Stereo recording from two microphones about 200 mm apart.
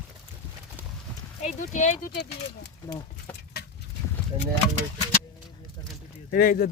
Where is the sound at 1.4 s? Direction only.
35° left (ahead or behind).